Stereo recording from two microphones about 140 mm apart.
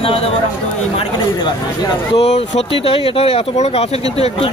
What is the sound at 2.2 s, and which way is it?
Speech, 50° left (ahead or behind).